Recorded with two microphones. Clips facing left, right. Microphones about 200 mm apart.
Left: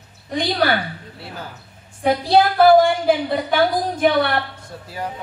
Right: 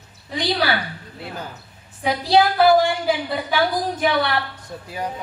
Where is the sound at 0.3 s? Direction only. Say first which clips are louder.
Left 2 dB; 50° left (ahead or behind).